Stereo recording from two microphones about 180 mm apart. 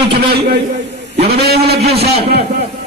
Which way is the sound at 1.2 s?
65° right (ahead or behind).